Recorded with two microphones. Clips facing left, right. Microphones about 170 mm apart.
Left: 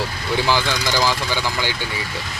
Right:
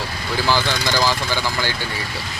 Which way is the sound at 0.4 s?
15° left (ahead or behind).